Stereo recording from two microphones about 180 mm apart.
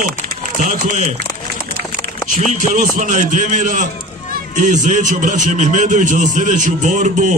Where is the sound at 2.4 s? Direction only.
45° right (ahead or behind).